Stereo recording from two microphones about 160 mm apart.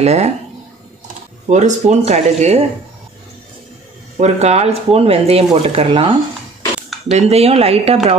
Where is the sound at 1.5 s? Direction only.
45° right (ahead or behind).